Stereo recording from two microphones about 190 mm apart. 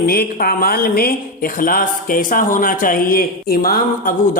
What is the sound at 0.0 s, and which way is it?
A woman's voice, 50° left (ahead or behind).